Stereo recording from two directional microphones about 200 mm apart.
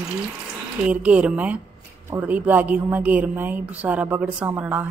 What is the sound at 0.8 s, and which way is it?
A woman's voice, 5° right (ahead or behind).